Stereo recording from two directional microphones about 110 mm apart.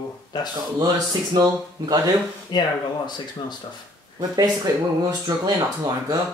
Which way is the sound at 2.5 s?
40° left (ahead or behind).